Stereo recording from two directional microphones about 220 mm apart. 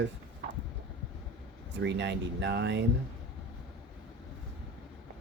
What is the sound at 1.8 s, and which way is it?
Speech, 50° right (ahead or behind).